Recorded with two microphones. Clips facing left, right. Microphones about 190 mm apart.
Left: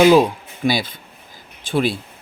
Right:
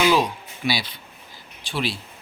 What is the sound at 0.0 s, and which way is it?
Speech, 45° left (ahead or behind).